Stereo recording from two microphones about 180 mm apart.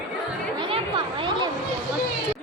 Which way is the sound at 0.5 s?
25° right (ahead or behind).